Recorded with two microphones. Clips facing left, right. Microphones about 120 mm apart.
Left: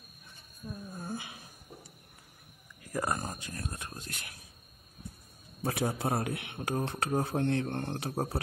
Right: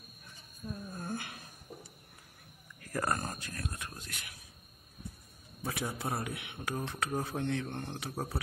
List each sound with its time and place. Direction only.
0.7 s a sound: 5° left (ahead or behind)
2.8 s speech: 15° left (ahead or behind)
3.6 s speech: 30° left (ahead or behind)
5.6 s a man's voice: 45° left (ahead or behind)
5.9 s a man's voice: 55° left (ahead or behind)